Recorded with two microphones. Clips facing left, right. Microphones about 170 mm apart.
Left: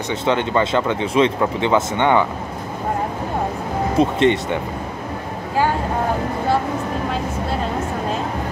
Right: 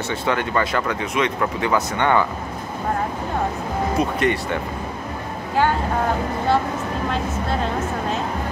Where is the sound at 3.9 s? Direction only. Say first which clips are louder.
Left 6 dB; 25° left (ahead or behind).